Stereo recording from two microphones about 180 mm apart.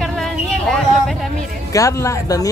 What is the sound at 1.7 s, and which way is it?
Speech, 15° left (ahead or behind).